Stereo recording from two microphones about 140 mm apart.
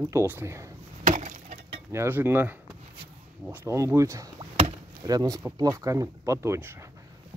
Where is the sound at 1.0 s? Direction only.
60° right (ahead or behind).